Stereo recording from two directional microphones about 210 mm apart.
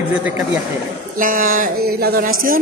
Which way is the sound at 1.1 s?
40° right (ahead or behind).